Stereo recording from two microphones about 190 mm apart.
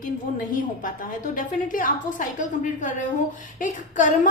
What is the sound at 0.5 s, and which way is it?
A woman's voice, 45° left (ahead or behind).